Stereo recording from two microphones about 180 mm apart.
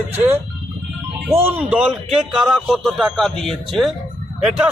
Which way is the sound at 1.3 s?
10° right (ahead or behind).